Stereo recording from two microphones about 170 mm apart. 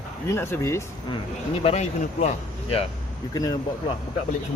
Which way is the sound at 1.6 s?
40° left (ahead or behind).